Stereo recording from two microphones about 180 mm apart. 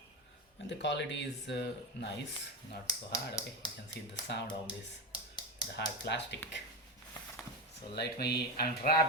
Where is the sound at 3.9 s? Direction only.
75° left (ahead or behind).